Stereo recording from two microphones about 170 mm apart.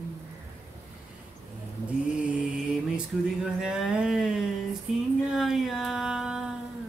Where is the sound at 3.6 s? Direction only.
5° right (ahead or behind).